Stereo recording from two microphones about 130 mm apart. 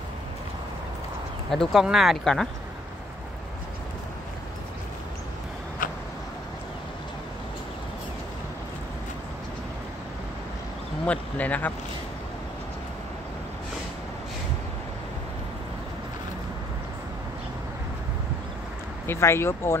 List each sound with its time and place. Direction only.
1.5 s speech: centre (ahead or behind)
5.8 s a sound: 90° left
11.1 s speech: 10° left (ahead or behind)
19.0 s speech: 20° left (ahead or behind)